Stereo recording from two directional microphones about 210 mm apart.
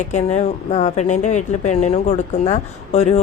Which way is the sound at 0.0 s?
35° left (ahead or behind).